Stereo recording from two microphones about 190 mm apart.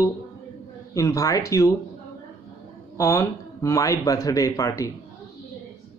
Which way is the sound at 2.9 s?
15° left (ahead or behind).